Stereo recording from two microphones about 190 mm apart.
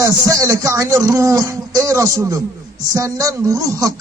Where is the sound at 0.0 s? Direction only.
15° right (ahead or behind).